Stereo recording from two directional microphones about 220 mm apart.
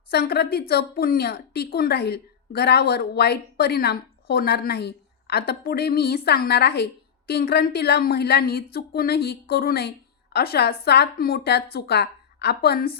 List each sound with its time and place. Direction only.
0.1 s a woman's voice: 45° left (ahead or behind)